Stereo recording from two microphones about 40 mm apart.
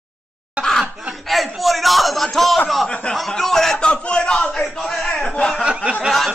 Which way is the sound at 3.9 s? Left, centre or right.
Left.